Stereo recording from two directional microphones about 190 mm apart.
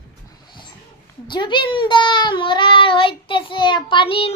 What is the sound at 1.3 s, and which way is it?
A child's voice, 25° left (ahead or behind).